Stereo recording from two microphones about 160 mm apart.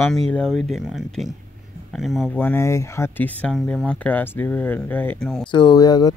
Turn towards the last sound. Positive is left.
turn(degrees=25)  # may be behind; listen again after turning